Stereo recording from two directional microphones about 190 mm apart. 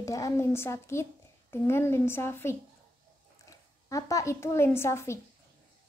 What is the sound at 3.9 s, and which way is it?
A woman's voice, 15° left (ahead or behind).